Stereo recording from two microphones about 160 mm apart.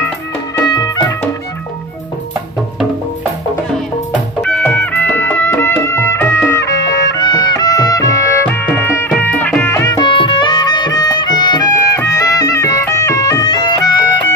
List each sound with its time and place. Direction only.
0.7 s music: 25° left (ahead or behind)
4.4 s music: 10° left (ahead or behind); by 13.7 s 25° left (ahead or behind)